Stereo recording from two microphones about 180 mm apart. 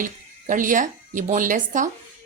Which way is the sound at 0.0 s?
50° right (ahead or behind).